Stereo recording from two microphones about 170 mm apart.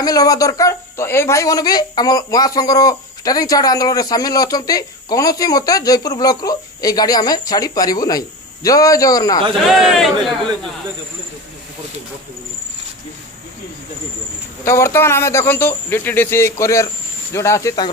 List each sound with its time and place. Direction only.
0.0 s speech: 20° left (ahead or behind)
9.7 s a man's voice: centre (ahead or behind)
14.6 s speech: 15° left (ahead or behind)